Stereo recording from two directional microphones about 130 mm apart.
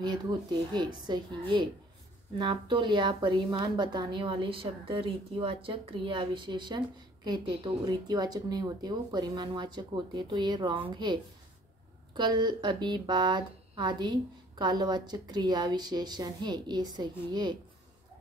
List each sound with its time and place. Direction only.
0.0 s speech: 35° right (ahead or behind)
2.3 s speech: 35° right (ahead or behind)